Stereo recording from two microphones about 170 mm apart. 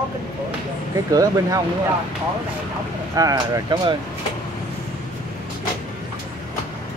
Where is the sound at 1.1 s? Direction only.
20° right (ahead or behind).